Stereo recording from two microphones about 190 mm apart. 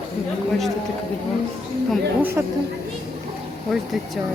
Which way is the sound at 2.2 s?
15° right (ahead or behind).